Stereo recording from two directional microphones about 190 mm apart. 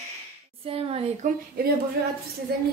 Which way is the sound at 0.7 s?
30° right (ahead or behind).